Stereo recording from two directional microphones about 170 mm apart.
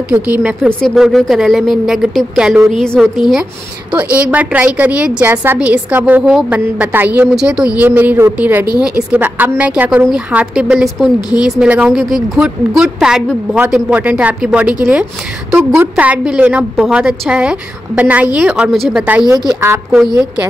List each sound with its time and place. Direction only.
0.1 s a woman's voice: 10° right (ahead or behind)
11.1 s a woman's voice: 25° left (ahead or behind)
11.4 s a woman's voice: 5° right (ahead or behind)
19.3 s a woman's voice: 15° right (ahead or behind)